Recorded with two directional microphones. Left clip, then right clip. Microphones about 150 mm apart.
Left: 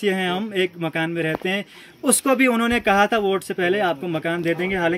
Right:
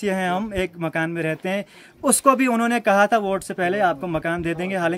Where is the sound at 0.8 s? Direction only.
55° right (ahead or behind).